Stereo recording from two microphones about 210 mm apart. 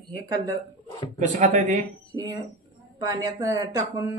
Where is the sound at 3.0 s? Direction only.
20° right (ahead or behind).